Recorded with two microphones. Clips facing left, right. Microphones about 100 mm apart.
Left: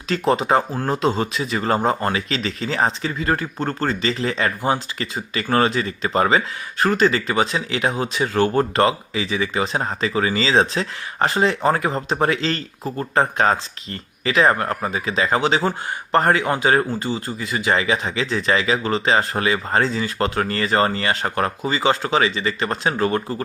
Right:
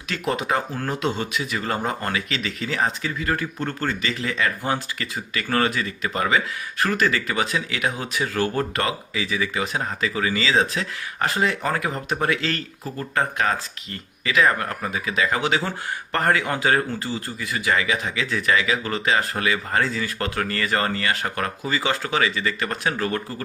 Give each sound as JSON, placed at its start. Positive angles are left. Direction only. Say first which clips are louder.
{"t": 0.1, "sound": "speech", "louder": "left 6 dB", "side_deg": 30}
{"t": 4.6, "sound": "speech", "louder": "left 4 dB", "side_deg": 20}